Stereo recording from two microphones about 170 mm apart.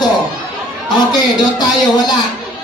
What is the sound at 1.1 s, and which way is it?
Music, 25° left (ahead or behind).